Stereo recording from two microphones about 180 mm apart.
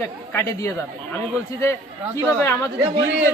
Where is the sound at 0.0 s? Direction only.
15° left (ahead or behind).